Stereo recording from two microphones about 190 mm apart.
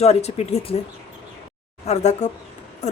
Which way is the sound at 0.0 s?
35° left (ahead or behind).